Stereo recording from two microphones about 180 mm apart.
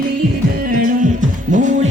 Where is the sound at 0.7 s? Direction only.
50° right (ahead or behind).